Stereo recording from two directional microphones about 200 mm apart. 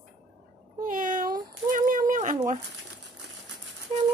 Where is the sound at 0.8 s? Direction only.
40° right (ahead or behind).